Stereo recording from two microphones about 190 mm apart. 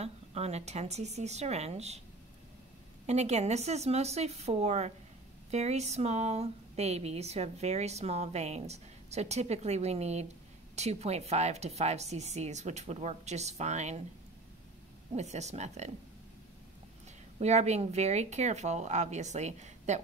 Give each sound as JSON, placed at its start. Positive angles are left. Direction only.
{"t": 0.0, "sound": "speech", "side_deg": -35}
{"t": 3.1, "sound": "speech", "side_deg": -35}
{"t": 15.1, "sound": "speech", "side_deg": -35}
{"t": 17.4, "sound": "speech", "side_deg": -35}